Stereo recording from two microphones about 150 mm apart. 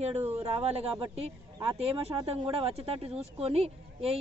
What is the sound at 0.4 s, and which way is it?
Speech, 45° right (ahead or behind).